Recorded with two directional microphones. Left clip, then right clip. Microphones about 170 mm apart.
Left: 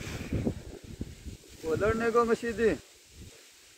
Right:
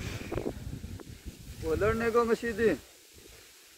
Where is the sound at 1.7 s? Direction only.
60° right (ahead or behind).